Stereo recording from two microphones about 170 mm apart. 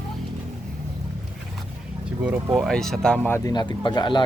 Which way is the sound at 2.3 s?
Centre (ahead or behind).